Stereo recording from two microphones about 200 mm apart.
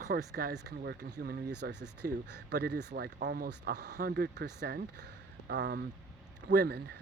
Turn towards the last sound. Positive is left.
turn(degrees=-55)  # may be behind; listen again after turning